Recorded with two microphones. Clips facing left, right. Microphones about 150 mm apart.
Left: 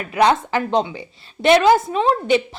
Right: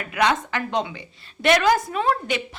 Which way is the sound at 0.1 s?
35° left (ahead or behind).